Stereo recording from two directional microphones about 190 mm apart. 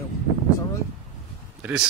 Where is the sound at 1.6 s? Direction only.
5° right (ahead or behind).